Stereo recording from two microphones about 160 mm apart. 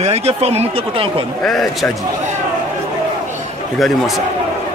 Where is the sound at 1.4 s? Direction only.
Centre (ahead or behind).